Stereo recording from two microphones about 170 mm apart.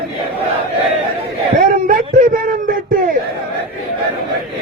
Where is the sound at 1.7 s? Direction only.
55° right (ahead or behind).